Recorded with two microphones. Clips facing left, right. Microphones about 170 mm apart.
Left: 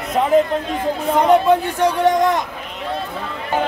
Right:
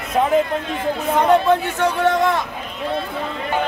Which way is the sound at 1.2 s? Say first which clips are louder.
Left 2 dB; 15° left (ahead or behind).